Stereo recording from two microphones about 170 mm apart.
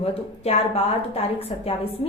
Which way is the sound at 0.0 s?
35° left (ahead or behind).